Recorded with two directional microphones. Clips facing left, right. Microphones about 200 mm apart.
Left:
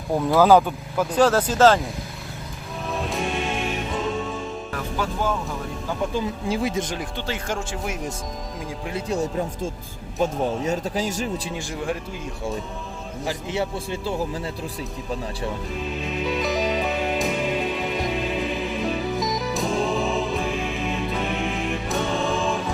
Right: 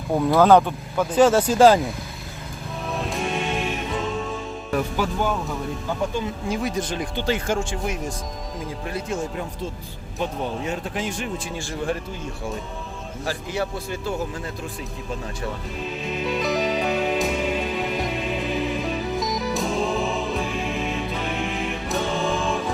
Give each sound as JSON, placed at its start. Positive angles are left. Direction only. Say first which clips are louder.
{"t": 0.2, "sound": "speech", "louder": "right 1 dB", "side_deg": 0}
{"t": 1.1, "sound": "speech", "louder": "right 3 dB", "side_deg": -5}
{"t": 2.9, "sound": "music", "louder": "even", "side_deg": 0}
{"t": 4.7, "sound": "speech", "louder": "right 6 dB", "side_deg": -15}
{"t": 6.5, "sound": "speech", "louder": "left 1 dB", "side_deg": 25}
{"t": 7.2, "sound": "speech", "louder": "right 8 dB", "side_deg": -10}
{"t": 7.5, "sound": "speech", "louder": "right 3 dB", "side_deg": 5}
{"t": 8.9, "sound": "speech", "louder": "left 2 dB", "side_deg": 25}
{"t": 10.2, "sound": "a man's voice", "louder": "left 4 dB", "side_deg": 40}
{"t": 13.2, "sound": "speech", "louder": "left 1 dB", "side_deg": 25}
{"t": 15.8, "sound": "music", "louder": "right 1 dB", "side_deg": 0}